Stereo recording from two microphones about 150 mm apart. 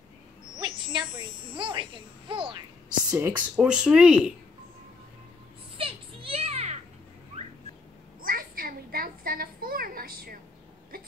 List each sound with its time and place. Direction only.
0.6 s a child's voice: 30° right (ahead or behind)
3.1 s speech: 10° right (ahead or behind)
5.8 s children playing: 40° right (ahead or behind)
8.2 s a sound: 75° right (ahead or behind)